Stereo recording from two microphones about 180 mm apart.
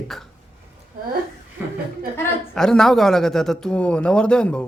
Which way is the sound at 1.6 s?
10° right (ahead or behind).